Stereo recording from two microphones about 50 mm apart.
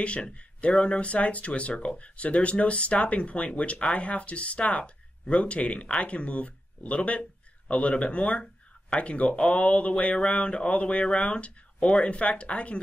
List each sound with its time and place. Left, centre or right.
0.0 s speech: left